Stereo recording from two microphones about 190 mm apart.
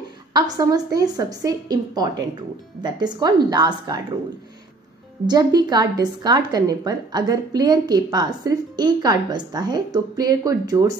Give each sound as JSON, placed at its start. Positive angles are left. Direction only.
{"t": 0.3, "sound": "a woman's voice", "side_deg": -20}
{"t": 5.2, "sound": "a woman's voice", "side_deg": -20}